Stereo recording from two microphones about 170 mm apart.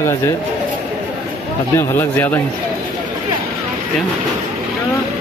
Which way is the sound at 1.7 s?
10° left (ahead or behind).